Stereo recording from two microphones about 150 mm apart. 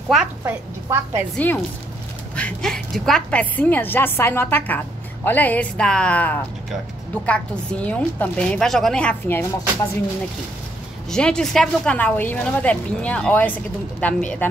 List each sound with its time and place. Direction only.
0.4 s a woman's voice: 20° right (ahead or behind)
1.3 s a woman's voice: 10° left (ahead or behind)
11.1 s a woman's voice: 5° left (ahead or behind)